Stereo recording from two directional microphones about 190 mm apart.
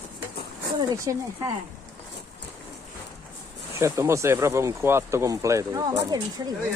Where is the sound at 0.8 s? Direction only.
20° right (ahead or behind).